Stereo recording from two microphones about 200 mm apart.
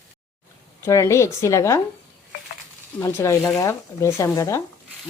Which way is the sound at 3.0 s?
15° left (ahead or behind).